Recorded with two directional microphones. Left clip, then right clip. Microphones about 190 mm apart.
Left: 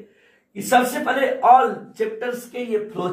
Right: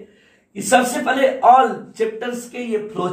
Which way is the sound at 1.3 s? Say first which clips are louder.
Right 1 dB; 20° right (ahead or behind).